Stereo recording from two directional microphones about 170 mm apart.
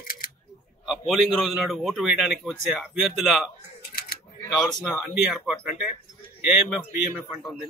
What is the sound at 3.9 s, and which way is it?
Camera, 60° left (ahead or behind).